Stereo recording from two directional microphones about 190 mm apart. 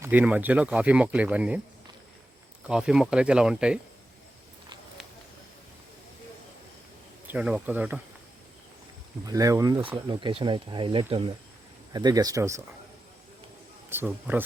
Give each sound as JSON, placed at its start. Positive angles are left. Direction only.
{"t": 0.0, "sound": "speech", "side_deg": -10}
{"t": 2.6, "sound": "speech", "side_deg": -5}
{"t": 7.3, "sound": "speech", "side_deg": -5}
{"t": 9.2, "sound": "speech", "side_deg": -20}
{"t": 13.9, "sound": "speech", "side_deg": -10}